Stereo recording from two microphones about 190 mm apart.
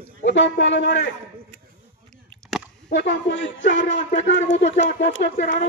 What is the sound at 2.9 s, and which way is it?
Speech, 65° left (ahead or behind).